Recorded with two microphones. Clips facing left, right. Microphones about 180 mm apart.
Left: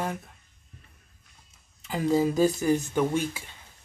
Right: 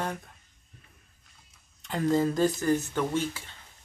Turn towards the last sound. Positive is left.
turn(degrees=10)  # may be behind; listen again after turning